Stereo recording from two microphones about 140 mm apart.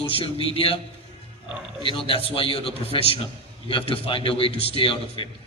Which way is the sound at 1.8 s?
40° left (ahead or behind).